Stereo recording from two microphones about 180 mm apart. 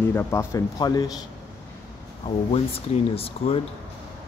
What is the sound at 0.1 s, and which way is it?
A man's voice, 15° left (ahead or behind).